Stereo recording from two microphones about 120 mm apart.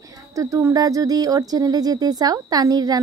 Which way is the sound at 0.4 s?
25° right (ahead or behind).